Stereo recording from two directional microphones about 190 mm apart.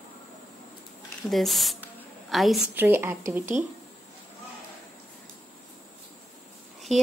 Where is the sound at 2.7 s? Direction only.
10° right (ahead or behind).